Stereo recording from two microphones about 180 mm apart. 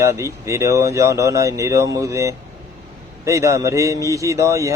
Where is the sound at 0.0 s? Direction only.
15° right (ahead or behind).